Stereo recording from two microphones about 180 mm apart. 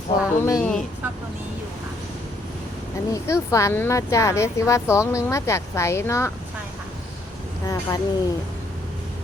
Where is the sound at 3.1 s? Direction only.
15° left (ahead or behind).